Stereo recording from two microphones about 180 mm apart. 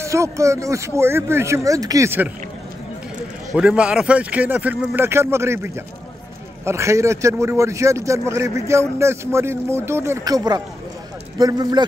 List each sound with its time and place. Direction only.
0.0 s speech: 15° right (ahead or behind)
3.5 s speech: 5° right (ahead or behind); by 11.8 s 20° right (ahead or behind)